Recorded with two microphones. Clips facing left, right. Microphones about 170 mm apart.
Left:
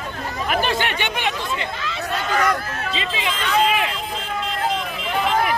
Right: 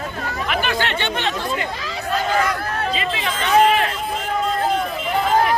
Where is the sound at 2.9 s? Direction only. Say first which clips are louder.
Right 2 dB; 20° left (ahead or behind).